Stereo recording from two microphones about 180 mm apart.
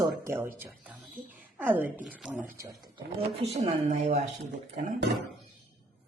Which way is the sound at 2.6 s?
20° right (ahead or behind).